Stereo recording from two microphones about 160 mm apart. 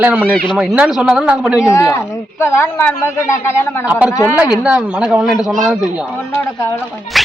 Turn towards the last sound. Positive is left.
turn(degrees=0)  # may be behind; listen again after turning